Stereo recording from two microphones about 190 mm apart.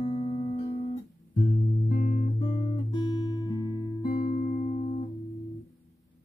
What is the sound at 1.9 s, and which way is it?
Guitar, 45° left (ahead or behind).